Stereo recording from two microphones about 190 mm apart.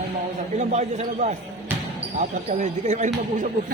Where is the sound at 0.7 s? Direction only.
35° right (ahead or behind).